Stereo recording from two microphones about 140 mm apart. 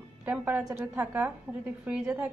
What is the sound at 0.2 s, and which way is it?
A woman's voice, 10° right (ahead or behind).